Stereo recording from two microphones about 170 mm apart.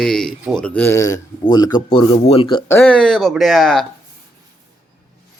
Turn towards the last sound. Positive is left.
turn(degrees=0)  # may be behind; listen again after turning